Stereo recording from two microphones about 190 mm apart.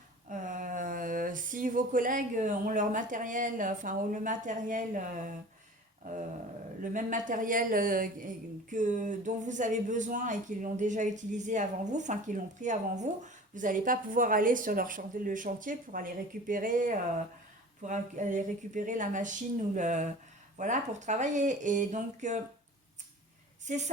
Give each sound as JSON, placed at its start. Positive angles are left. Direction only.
{"t": 0.3, "sound": "speech", "side_deg": -45}
{"t": 6.9, "sound": "speech", "side_deg": -40}
{"t": 23.6, "sound": "a woman's voice", "side_deg": -40}